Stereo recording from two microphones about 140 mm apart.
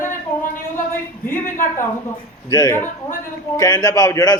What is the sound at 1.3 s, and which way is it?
A woman's voice, 20° left (ahead or behind).